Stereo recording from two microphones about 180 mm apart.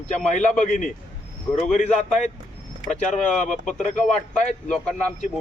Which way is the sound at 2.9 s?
45° left (ahead or behind).